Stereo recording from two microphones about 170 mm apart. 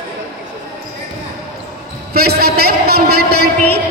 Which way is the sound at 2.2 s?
65° right (ahead or behind).